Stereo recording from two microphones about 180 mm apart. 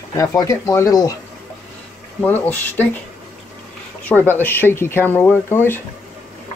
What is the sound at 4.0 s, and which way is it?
Speech, 10° left (ahead or behind).